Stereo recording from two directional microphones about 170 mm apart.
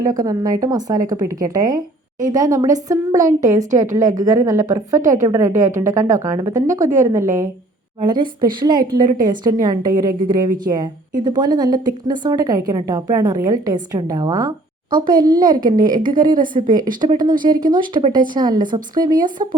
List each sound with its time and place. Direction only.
0.0 s a woman's voice: 20° right (ahead or behind)